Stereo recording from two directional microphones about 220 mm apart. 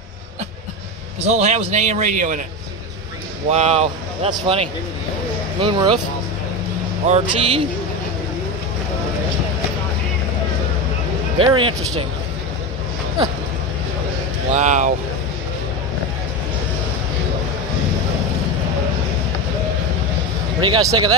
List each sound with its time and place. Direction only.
1.2 s a man's voice: 30° right (ahead or behind)
3.4 s speech: 30° right (ahead or behind)
7.1 s speech: 25° right (ahead or behind)
11.3 s speech: 20° right (ahead or behind)
14.5 s a man's voice: 35° right (ahead or behind)
20.6 s speech: 20° right (ahead or behind)